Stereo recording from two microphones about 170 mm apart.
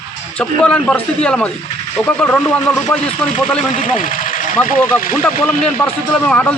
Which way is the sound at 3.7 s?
50° left (ahead or behind).